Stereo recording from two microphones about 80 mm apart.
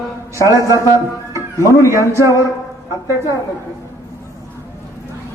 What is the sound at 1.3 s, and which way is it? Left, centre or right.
Music, left.